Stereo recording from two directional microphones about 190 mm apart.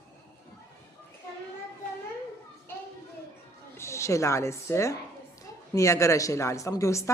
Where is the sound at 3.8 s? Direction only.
15° left (ahead or behind).